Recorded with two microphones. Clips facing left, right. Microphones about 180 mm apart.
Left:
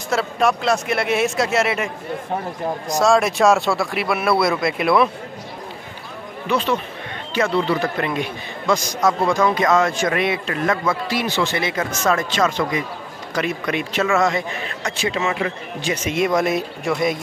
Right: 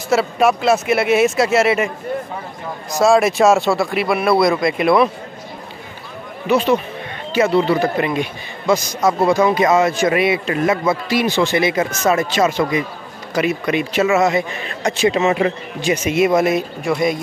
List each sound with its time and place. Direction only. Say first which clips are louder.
0.1 s speech: right 4 dB; 5° right (ahead or behind)
3.0 s speech: right 3 dB; 5° right (ahead or behind)
6.4 s a man's voice: right 5 dB; 10° right (ahead or behind)
14.9 s speech: right 7 dB; 20° right (ahead or behind)
15.8 s speech: right 5 dB; 10° right (ahead or behind)